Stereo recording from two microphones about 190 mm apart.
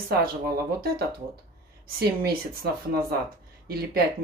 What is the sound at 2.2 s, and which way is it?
Speech, 55° right (ahead or behind).